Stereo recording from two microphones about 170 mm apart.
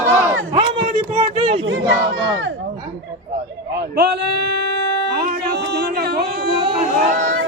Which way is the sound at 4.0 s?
75° right (ahead or behind).